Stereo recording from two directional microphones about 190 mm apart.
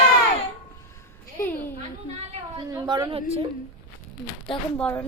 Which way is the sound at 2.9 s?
25° right (ahead or behind).